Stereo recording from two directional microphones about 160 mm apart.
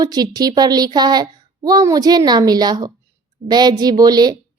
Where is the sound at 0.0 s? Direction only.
25° right (ahead or behind).